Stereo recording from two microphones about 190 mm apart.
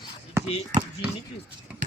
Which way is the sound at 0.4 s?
15° right (ahead or behind).